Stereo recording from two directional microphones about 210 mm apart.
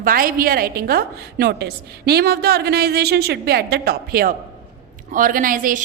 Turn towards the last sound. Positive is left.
turn(degrees=-40)  # may be behind; listen again after turning